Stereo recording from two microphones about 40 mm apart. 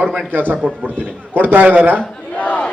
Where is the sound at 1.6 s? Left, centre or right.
Right.